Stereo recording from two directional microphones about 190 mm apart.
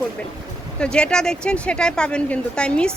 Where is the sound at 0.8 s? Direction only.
5° left (ahead or behind).